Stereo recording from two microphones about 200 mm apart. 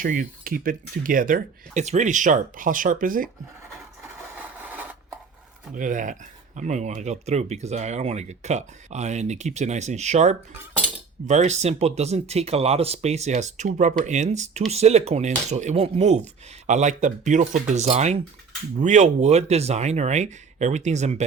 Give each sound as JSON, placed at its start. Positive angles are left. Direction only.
{"t": 0.0, "sound": "speech", "side_deg": -45}
{"t": 5.7, "sound": "speech", "side_deg": -40}